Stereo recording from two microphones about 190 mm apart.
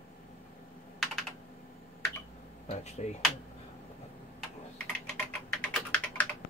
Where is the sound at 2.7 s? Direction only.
35° left (ahead or behind).